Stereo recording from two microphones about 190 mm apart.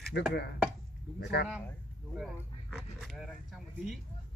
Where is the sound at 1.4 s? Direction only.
60° left (ahead or behind).